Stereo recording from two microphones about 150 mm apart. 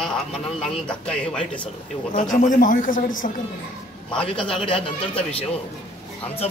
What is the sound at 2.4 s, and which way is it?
Speech, 65° left (ahead or behind).